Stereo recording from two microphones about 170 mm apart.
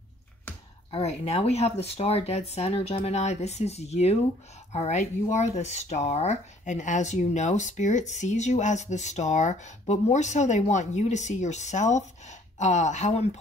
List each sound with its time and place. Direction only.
0.9 s speech: 40° left (ahead or behind)